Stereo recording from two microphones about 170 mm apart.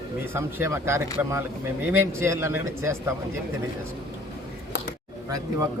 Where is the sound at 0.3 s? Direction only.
15° right (ahead or behind).